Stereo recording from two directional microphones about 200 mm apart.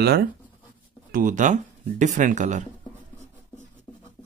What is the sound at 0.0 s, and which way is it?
Speech, 50° right (ahead or behind).